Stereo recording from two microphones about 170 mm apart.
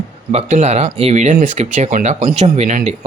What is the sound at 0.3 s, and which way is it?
Speech, 40° right (ahead or behind).